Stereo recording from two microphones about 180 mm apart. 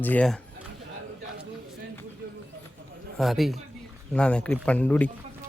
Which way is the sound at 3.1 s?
Centre (ahead or behind).